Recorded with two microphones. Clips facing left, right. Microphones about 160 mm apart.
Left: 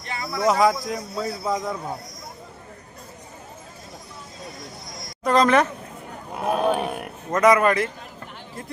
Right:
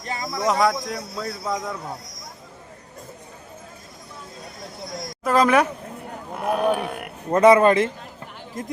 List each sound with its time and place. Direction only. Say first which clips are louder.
0.0 s a sound: right 2 dB; 40° right (ahead or behind)
0.3 s a man's voice: left 2 dB; centre (ahead or behind)
5.2 s speech: even; 5° right (ahead or behind)
6.3 s speech: even; 20° left (ahead or behind)
7.3 s speech: right 3 dB; 30° right (ahead or behind)